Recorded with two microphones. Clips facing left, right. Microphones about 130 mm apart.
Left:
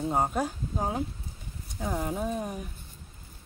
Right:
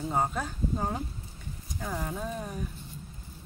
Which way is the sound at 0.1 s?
5° left (ahead or behind).